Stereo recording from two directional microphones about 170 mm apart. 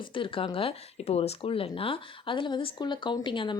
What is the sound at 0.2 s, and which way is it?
Speech, 30° left (ahead or behind).